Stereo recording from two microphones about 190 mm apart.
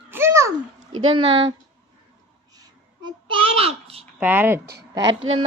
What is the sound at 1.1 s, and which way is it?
Speech, 30° right (ahead or behind).